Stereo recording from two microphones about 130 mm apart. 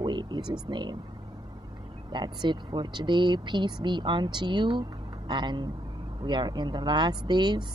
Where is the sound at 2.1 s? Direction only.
35° right (ahead or behind).